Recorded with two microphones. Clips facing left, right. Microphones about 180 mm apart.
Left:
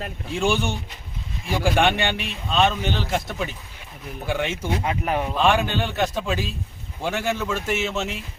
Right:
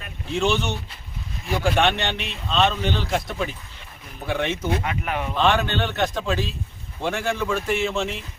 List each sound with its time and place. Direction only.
0.3 s a man's voice: 10° left (ahead or behind)
4.8 s speech: 30° left (ahead or behind)
5.3 s a man's voice: 10° left (ahead or behind)